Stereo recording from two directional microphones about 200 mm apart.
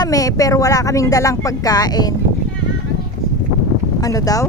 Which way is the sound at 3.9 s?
15° left (ahead or behind).